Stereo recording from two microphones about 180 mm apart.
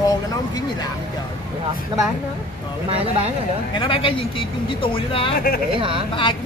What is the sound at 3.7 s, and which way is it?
Speech, 30° left (ahead or behind).